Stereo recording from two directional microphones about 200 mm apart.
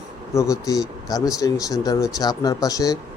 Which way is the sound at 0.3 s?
15° left (ahead or behind).